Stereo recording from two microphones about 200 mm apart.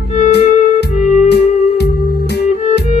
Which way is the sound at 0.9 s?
35° left (ahead or behind).